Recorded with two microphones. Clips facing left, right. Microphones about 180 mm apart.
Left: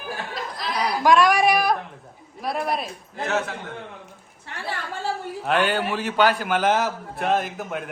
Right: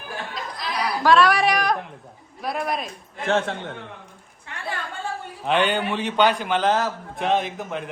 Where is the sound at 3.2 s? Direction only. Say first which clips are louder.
Right 3 dB; 30° right (ahead or behind).